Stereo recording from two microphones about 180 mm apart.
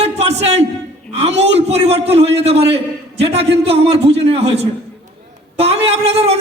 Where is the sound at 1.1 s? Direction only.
35° right (ahead or behind).